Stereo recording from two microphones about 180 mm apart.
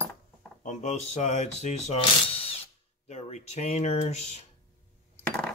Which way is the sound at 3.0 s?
40° left (ahead or behind).